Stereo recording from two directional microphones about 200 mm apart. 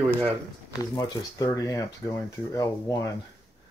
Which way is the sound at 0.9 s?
20° left (ahead or behind).